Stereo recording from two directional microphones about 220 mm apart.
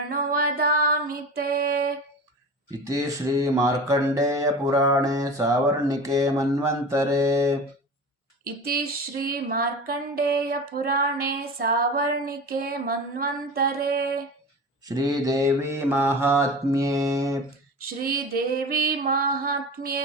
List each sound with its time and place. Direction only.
0.1 s female singing: 40° right (ahead or behind)
2.6 s speech: 15° right (ahead or behind)
8.6 s female singing: 40° right (ahead or behind)
14.8 s speech: 15° right (ahead or behind)
17.7 s female singing: 45° right (ahead or behind)